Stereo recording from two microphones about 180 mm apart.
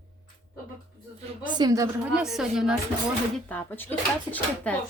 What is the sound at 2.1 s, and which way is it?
Speech, 5° right (ahead or behind).